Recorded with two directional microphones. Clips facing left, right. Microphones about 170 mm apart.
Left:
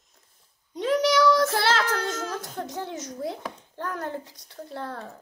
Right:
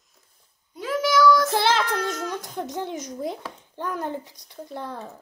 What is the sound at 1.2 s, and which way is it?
Child singing, 25° left (ahead or behind).